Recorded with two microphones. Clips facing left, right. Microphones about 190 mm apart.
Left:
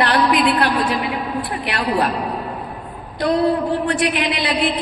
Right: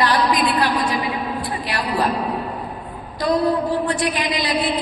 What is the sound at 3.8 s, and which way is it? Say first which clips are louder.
Speech: left 2 dB; 60° left (ahead or behind).